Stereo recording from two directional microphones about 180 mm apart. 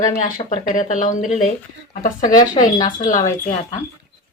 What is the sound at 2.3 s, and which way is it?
Speech, 20° left (ahead or behind).